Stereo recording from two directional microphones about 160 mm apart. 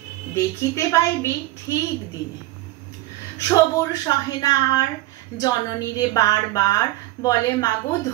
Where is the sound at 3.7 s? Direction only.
20° left (ahead or behind).